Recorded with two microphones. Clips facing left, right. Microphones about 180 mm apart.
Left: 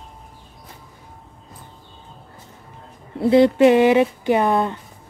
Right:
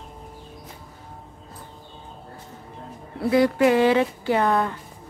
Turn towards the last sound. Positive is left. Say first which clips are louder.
# left 3 dB
turn(degrees=20)  # may be behind; listen again after turning